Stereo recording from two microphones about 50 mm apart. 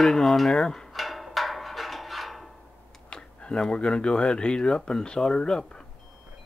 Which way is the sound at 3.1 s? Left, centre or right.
Centre.